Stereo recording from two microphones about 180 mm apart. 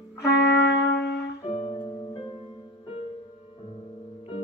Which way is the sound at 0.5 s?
70° left (ahead or behind).